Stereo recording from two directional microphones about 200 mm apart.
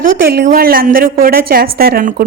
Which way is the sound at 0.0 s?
50° right (ahead or behind).